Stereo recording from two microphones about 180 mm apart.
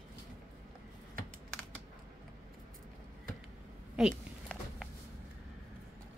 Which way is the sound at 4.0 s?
Centre (ahead or behind).